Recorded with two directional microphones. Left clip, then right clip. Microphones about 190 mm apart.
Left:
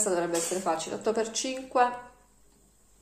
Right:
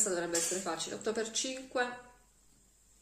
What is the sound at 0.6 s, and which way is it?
Speech, 20° right (ahead or behind).